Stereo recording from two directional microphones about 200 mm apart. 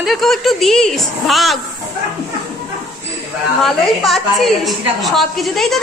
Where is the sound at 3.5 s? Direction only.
Centre (ahead or behind).